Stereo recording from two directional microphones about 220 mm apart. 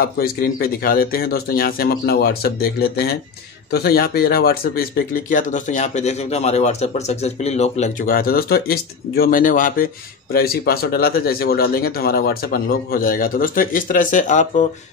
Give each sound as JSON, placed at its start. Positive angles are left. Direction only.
{"t": 0.0, "sound": "speech", "side_deg": 45}